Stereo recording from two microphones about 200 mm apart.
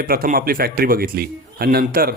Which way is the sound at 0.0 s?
45° right (ahead or behind).